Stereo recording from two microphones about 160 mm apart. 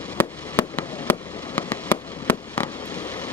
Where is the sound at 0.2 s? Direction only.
10° left (ahead or behind).